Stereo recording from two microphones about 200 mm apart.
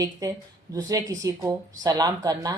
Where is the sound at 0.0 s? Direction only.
20° right (ahead or behind).